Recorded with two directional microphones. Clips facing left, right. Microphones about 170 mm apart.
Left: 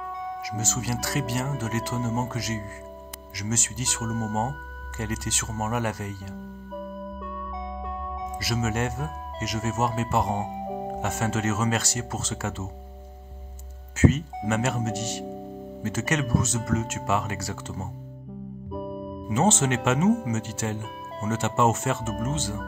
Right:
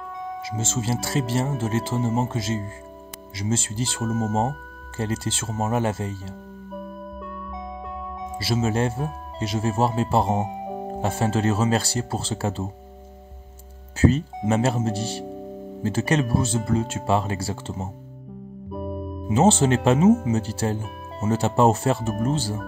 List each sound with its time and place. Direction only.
0.4 s speech: 25° right (ahead or behind)
4.3 s speech: centre (ahead or behind)
4.9 s speech: 30° right (ahead or behind)
6.7 s music: centre (ahead or behind)
8.4 s speech: 30° right (ahead or behind)
10.3 s music: centre (ahead or behind)
11.0 s speech: 30° right (ahead or behind)
13.9 s speech: 35° right (ahead or behind)
18.7 s music: centre (ahead or behind)
19.2 s speech: 30° right (ahead or behind)